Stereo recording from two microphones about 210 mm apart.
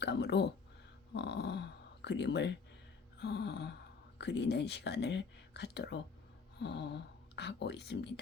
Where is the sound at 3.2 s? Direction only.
55° left (ahead or behind).